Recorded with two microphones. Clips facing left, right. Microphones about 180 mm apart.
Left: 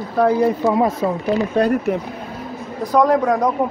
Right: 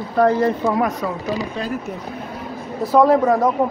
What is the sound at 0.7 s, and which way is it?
Speech, 25° left (ahead or behind).